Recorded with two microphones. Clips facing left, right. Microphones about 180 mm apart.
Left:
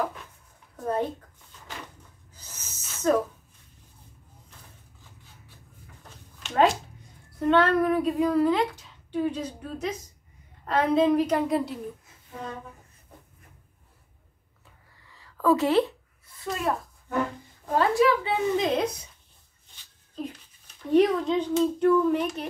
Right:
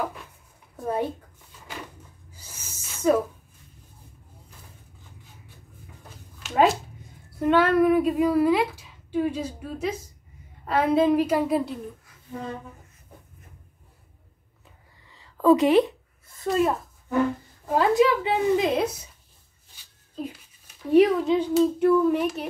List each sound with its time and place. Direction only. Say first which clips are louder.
0.7 s a sound: right 1 dB; 10° right (ahead or behind)
6.4 s speech: right 1 dB; 5° right (ahead or behind)
15.0 s a sound: right 5 dB; 20° right (ahead or behind)
16.5 s a child's voice: right 9 dB; 40° right (ahead or behind)
17.6 s speech: right 2 dB; 15° right (ahead or behind)
20.2 s a child's voice: right 1 dB; 5° right (ahead or behind)